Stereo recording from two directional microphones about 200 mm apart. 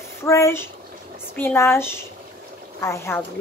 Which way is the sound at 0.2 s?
15° left (ahead or behind).